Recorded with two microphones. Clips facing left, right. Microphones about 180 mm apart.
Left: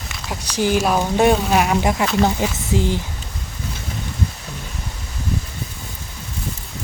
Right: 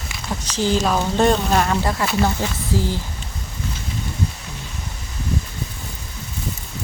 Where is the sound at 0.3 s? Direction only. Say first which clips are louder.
Left 1 dB; 10° left (ahead or behind).